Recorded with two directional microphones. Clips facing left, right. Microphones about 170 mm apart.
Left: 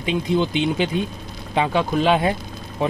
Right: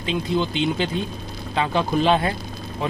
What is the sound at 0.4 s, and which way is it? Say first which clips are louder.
Speech: left 2 dB; 15° left (ahead or behind).